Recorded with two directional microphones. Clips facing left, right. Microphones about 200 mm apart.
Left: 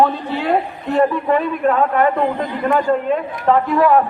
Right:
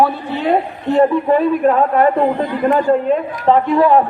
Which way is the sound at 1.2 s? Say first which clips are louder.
Right 4 dB; 30° right (ahead or behind).